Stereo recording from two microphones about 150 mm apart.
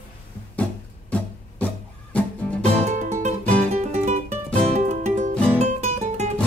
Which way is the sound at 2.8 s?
50° right (ahead or behind).